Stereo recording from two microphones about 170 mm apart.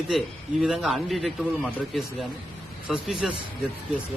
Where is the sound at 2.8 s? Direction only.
5° right (ahead or behind).